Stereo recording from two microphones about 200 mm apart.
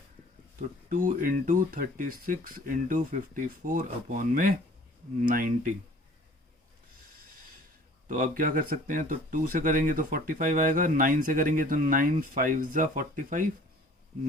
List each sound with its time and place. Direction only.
0.9 s speech: 45° right (ahead or behind)
8.0 s speech: 45° right (ahead or behind)